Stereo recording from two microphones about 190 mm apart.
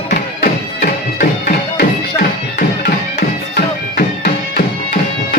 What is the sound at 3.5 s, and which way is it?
Music, 55° left (ahead or behind).